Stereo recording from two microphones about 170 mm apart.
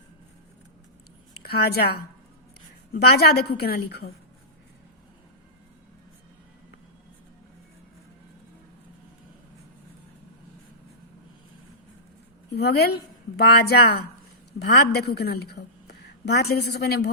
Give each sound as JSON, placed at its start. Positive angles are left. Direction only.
{"t": 1.4, "sound": "a woman's voice", "side_deg": 65}
{"t": 12.5, "sound": "a woman's voice", "side_deg": 70}